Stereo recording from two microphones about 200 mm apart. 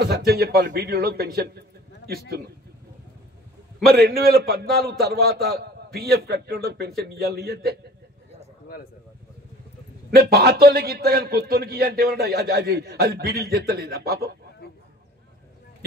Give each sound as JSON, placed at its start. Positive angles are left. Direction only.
{"t": 0.0, "sound": "a man's voice", "side_deg": -55}
{"t": 3.9, "sound": "a man's voice", "side_deg": -50}
{"t": 10.1, "sound": "a man's voice", "side_deg": -50}